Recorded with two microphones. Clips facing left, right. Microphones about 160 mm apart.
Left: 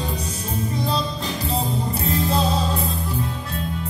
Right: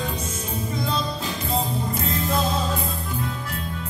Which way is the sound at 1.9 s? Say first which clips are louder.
Left 3 dB; 35° left (ahead or behind).